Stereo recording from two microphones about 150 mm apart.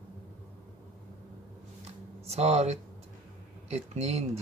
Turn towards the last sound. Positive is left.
turn(degrees=-45)  # may be behind; listen again after turning